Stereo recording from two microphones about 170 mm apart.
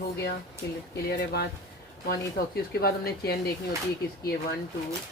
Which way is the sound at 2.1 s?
65° left (ahead or behind).